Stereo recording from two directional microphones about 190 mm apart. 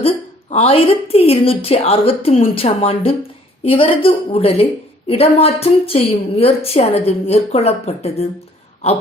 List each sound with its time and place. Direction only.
0.5 s a woman's voice: 30° left (ahead or behind)